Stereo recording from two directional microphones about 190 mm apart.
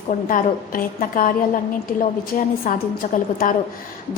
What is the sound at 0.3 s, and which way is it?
A woman's voice, 45° left (ahead or behind).